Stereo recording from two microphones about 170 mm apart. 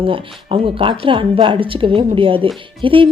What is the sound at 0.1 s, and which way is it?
Speech, 30° right (ahead or behind).